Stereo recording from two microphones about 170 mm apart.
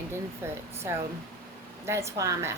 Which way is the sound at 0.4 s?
15° right (ahead or behind).